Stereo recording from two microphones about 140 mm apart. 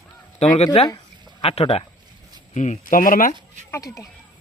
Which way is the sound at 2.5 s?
60° left (ahead or behind).